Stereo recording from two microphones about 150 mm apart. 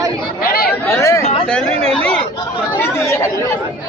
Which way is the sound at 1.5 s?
5° left (ahead or behind).